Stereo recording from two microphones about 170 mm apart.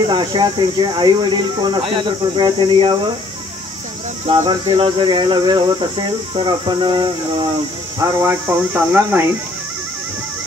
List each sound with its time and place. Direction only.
0.0 s speech: 25° right (ahead or behind)
4.3 s speech: 30° right (ahead or behind); by 9.2 s 10° right (ahead or behind)